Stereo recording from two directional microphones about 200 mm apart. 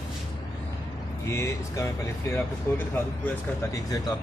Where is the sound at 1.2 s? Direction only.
15° left (ahead or behind).